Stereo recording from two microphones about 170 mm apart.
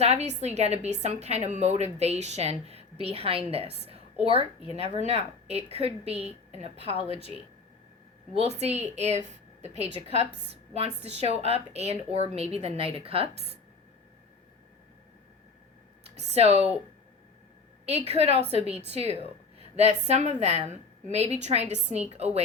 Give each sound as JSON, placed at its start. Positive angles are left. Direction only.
{"t": 0.0, "sound": "a woman's voice", "side_deg": -40}
{"t": 6.9, "sound": "speech", "side_deg": 35}
{"t": 8.3, "sound": "a woman's voice", "side_deg": -40}
{"t": 16.1, "sound": "a woman's voice", "side_deg": -40}
{"t": 17.8, "sound": "a woman's voice", "side_deg": -40}